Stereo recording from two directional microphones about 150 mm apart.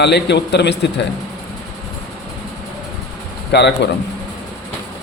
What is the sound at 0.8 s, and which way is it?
Speech, 90° left.